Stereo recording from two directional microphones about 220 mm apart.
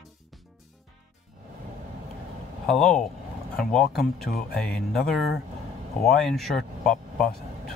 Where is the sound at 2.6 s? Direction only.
Centre (ahead or behind).